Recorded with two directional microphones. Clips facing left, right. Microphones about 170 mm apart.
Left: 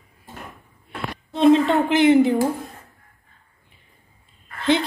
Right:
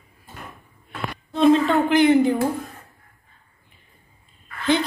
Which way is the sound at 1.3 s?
20° left (ahead or behind).